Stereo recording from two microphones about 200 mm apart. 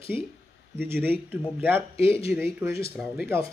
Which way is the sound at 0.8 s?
10° right (ahead or behind).